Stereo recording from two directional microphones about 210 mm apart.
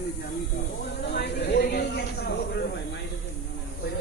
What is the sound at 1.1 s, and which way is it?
Snake, 50° left (ahead or behind).